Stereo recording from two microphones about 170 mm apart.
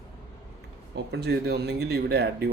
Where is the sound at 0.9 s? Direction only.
75° right (ahead or behind).